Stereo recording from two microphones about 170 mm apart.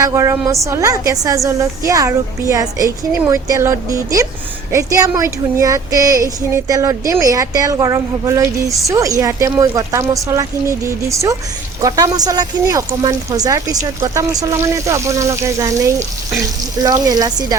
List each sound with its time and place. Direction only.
0.0 s child singing: 20° right (ahead or behind)
8.8 s speech: 20° right (ahead or behind)
11.8 s child singing: 20° right (ahead or behind)
14.0 s speech: 20° right (ahead or behind)
16.8 s child singing: 20° right (ahead or behind)